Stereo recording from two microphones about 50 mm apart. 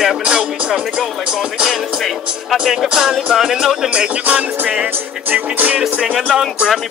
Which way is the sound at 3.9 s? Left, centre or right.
Right.